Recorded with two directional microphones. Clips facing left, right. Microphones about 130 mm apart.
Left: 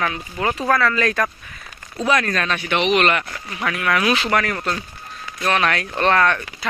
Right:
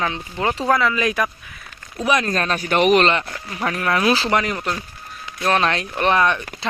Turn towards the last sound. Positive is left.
turn(degrees=-20)  # may be behind; listen again after turning